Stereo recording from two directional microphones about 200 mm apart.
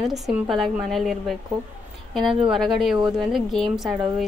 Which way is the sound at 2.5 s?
Centre (ahead or behind).